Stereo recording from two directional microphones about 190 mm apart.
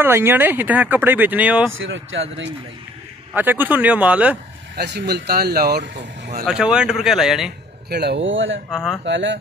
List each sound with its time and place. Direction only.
0.0 s speech: 10° right (ahead or behind)
1.8 s speech: 90° right
3.3 s speech: 10° right (ahead or behind)
4.7 s speech: 60° right (ahead or behind)
6.4 s speech: 5° right (ahead or behind)
7.9 s speech: 60° right (ahead or behind); by 8.5 s 85° right
8.7 s speech: centre (ahead or behind)
9.0 s speech: 70° right (ahead or behind)